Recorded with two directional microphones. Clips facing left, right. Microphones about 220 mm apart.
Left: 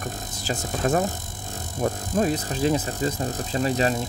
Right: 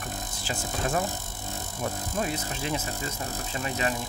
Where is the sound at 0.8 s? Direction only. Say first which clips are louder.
Left 7 dB; 40° left (ahead or behind).